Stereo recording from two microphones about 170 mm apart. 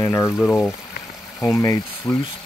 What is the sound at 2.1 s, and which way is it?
Speech, 10° left (ahead or behind).